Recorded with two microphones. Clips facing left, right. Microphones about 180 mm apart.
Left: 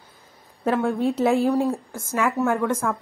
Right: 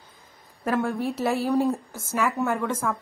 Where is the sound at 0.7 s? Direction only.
Centre (ahead or behind).